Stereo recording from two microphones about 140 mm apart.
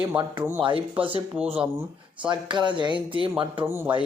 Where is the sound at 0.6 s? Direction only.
35° right (ahead or behind).